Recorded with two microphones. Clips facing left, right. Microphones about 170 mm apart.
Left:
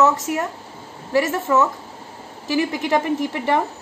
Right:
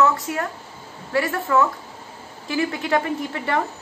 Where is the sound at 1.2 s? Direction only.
20° left (ahead or behind).